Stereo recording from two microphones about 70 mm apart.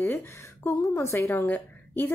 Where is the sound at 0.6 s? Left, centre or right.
Left.